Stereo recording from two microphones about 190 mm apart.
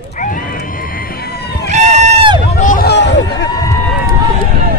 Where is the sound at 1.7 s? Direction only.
35° right (ahead or behind).